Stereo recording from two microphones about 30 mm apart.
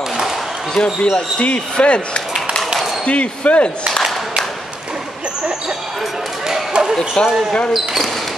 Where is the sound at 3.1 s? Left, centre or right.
Left.